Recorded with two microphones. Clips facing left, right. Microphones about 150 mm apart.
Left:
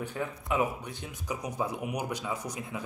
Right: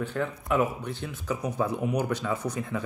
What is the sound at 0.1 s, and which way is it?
Speech, 70° right (ahead or behind).